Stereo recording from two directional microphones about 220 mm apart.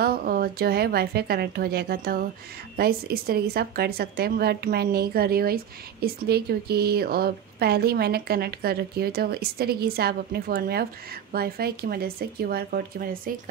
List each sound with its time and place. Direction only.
0.0 s speech: 45° right (ahead or behind)